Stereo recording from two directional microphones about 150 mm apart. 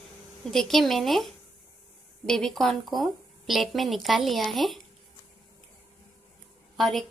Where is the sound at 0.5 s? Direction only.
Centre (ahead or behind).